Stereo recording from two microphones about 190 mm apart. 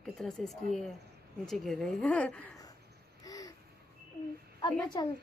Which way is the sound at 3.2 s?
20° left (ahead or behind).